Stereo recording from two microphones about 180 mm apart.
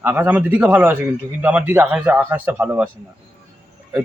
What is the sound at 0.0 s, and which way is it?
Speech, 10° right (ahead or behind).